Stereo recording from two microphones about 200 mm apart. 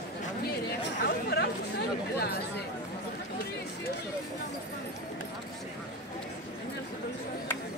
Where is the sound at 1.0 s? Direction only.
55° left (ahead or behind).